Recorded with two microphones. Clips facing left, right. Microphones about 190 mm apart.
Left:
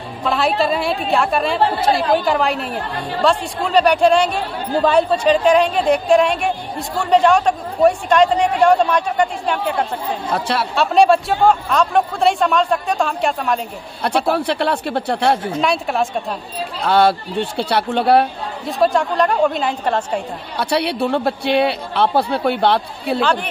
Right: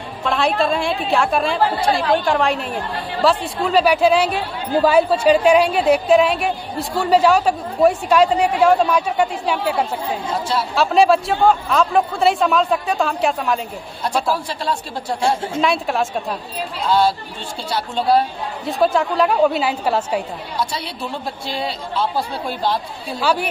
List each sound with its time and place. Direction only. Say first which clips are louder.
0.2 s a woman's voice: left 1 dB; centre (ahead or behind)
10.3 s speech: left 2 dB; 65° left (ahead or behind)
10.8 s a woman's voice: left 1 dB; centre (ahead or behind)
14.0 s speech: left 4 dB; 65° left (ahead or behind)
15.6 s a woman's voice: right 2 dB; centre (ahead or behind)
16.8 s speech: left 3 dB; 65° left (ahead or behind)
18.7 s a woman's voice: left 1 dB; centre (ahead or behind)
20.5 s speech: left 7 dB; 65° left (ahead or behind)
23.2 s a woman's voice: right 3 dB; 10° right (ahead or behind)